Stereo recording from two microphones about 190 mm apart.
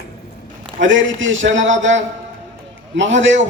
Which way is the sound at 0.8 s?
80° right.